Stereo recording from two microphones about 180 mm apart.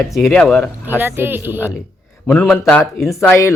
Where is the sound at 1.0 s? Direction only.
10° right (ahead or behind).